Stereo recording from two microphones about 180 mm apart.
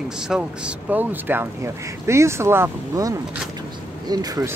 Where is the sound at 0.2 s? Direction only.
5° right (ahead or behind); by 4.6 s 20° right (ahead or behind).